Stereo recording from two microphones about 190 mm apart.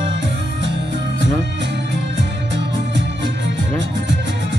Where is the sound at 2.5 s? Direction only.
70° right (ahead or behind).